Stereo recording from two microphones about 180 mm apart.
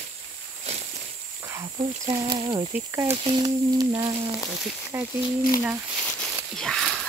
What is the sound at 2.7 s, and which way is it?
Speech, 15° right (ahead or behind).